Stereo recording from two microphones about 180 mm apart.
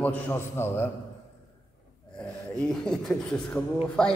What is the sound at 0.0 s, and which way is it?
Speech, 10° left (ahead or behind).